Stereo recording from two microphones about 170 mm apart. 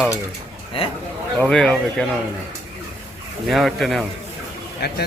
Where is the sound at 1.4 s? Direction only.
5° left (ahead or behind).